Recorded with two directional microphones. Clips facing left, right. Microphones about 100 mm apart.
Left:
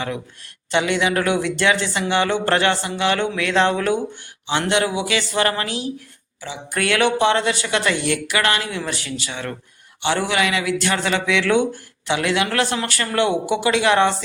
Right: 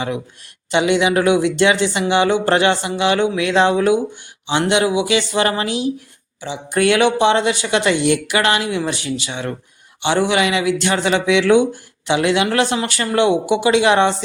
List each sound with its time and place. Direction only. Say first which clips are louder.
0.7 s speech: right 4 dB; 15° right (ahead or behind)